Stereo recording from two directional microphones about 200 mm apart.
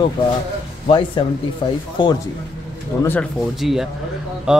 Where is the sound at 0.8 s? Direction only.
25° left (ahead or behind).